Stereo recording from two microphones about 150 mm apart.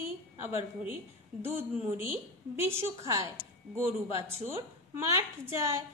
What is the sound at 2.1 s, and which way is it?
A woman's voice, 15° right (ahead or behind).